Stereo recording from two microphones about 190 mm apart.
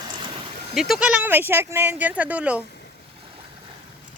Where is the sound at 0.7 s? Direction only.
Centre (ahead or behind).